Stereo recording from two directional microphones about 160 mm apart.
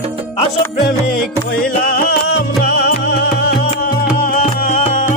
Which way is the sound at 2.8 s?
90° left.